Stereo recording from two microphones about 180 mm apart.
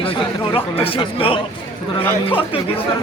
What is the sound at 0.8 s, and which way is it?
Speech, 30° left (ahead or behind).